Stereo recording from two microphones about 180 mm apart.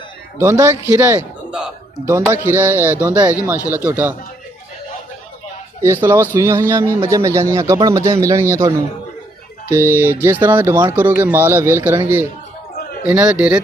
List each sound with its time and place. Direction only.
0.4 s a man's voice: 15° right (ahead or behind)
5.8 s a man's voice: 15° right (ahead or behind)
13.0 s a man's voice: 10° right (ahead or behind)